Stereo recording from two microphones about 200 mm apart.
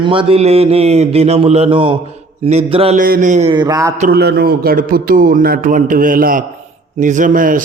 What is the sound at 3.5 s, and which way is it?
Speech, 20° right (ahead or behind).